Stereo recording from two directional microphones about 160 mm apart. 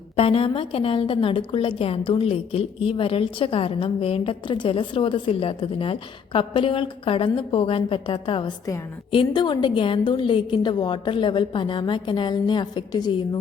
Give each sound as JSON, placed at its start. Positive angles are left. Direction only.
{"t": 0.2, "sound": "a woman's voice", "side_deg": 35}